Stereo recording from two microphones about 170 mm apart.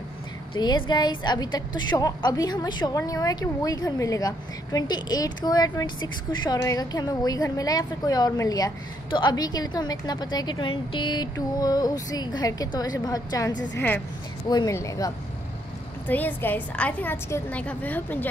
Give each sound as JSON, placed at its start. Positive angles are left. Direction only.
{"t": 0.6, "sound": "a woman's voice", "side_deg": 25}
{"t": 13.7, "sound": "a woman's voice", "side_deg": 10}